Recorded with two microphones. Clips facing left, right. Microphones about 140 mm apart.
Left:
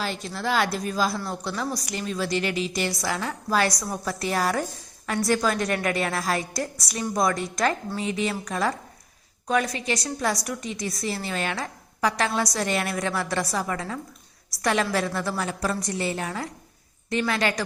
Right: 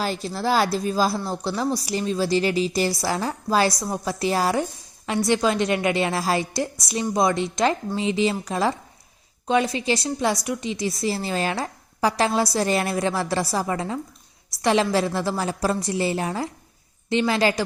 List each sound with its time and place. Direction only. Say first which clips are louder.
0.0 s a woman's voice: right 4 dB; 35° right (ahead or behind)